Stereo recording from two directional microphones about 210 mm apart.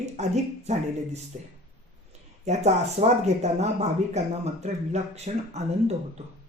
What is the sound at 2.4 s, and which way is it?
Speech, 30° right (ahead or behind).